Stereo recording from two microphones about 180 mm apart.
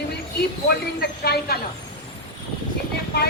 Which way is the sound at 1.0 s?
65° left (ahead or behind).